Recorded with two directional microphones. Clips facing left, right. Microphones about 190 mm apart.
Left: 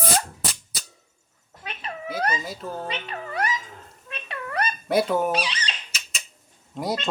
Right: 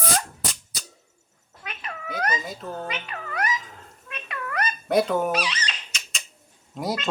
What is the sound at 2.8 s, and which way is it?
Speech, 30° left (ahead or behind).